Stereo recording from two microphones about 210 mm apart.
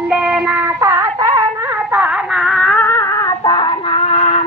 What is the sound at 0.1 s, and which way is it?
Music, 5° right (ahead or behind).